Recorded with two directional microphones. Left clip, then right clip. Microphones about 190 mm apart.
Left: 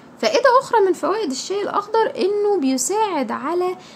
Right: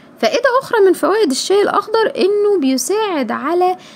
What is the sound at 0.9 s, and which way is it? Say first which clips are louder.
A woman's voice: right 7 dB; 40° right (ahead or behind).